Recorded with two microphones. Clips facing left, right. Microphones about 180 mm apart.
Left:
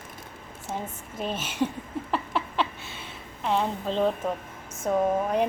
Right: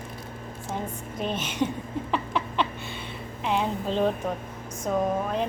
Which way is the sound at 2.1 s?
5° left (ahead or behind).